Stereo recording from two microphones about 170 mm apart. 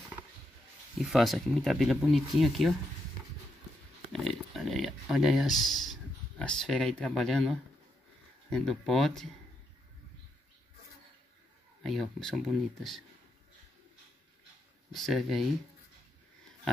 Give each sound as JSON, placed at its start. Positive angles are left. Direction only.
{"t": 0.9, "sound": "speech", "side_deg": 0}
{"t": 4.1, "sound": "a sound", "side_deg": 0}
{"t": 8.5, "sound": "speech", "side_deg": 5}
{"t": 11.8, "sound": "speech", "side_deg": 0}
{"t": 14.9, "sound": "speech", "side_deg": 0}